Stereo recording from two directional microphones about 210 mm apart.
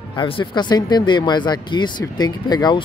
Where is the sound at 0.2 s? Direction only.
20° left (ahead or behind).